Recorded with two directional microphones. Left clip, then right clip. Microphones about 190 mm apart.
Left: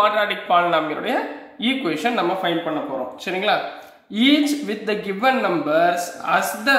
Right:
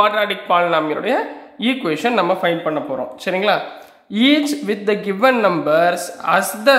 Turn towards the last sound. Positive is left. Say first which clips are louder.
# right 4 dB
turn(degrees=-35)  # may be behind; listen again after turning